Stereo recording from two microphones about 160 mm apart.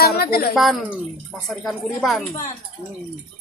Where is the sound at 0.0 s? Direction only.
75° left (ahead or behind).